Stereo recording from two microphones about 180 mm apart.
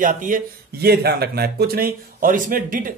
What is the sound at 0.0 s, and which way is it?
Speech, 50° right (ahead or behind).